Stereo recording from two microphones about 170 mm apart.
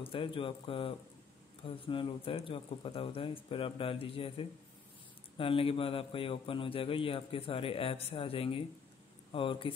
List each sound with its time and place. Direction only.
0.0 s a man's voice: 30° left (ahead or behind)